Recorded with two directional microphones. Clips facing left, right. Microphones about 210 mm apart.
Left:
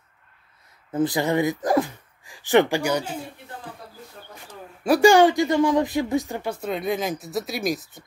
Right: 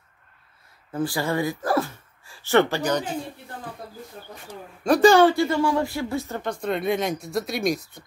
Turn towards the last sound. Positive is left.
turn(degrees=0)  # may be behind; listen again after turning